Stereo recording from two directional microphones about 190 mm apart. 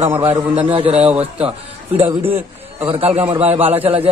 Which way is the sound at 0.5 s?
30° right (ahead or behind).